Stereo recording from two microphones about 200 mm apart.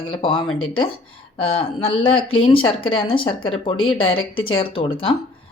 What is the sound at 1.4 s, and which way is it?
Speech, 25° left (ahead or behind).